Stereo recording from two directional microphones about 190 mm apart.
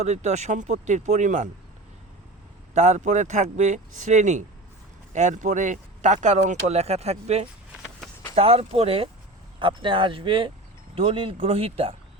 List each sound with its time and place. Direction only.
0.0 s speech: 35° right (ahead or behind)
2.7 s speech: 35° right (ahead or behind)